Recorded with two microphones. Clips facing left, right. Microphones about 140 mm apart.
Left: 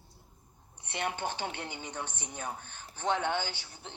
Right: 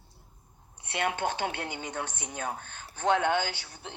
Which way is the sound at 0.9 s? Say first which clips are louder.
Right 5 dB; 90° right.